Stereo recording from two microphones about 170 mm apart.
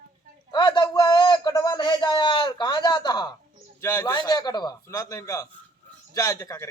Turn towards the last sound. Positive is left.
turn(degrees=20)  # may be behind; listen again after turning